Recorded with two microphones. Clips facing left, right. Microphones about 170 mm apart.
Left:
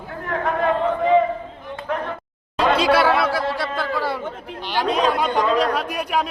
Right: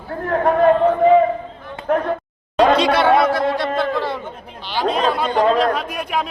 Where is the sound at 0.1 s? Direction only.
40° right (ahead or behind).